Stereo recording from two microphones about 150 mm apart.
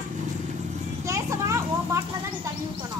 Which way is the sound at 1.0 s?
20° right (ahead or behind).